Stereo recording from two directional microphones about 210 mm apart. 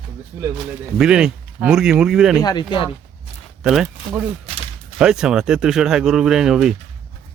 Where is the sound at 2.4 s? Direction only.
20° left (ahead or behind).